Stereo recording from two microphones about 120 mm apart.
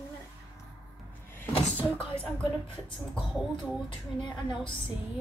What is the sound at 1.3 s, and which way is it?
Vehicle, 15° left (ahead or behind).